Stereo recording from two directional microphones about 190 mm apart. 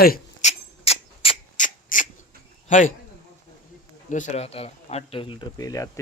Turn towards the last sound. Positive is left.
turn(degrees=15)  # may be behind; listen again after turning